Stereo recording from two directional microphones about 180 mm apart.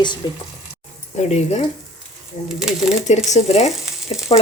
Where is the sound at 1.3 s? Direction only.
35° left (ahead or behind).